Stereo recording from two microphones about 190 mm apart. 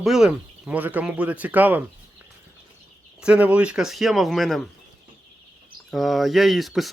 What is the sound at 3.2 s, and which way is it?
Speech, 5° right (ahead or behind).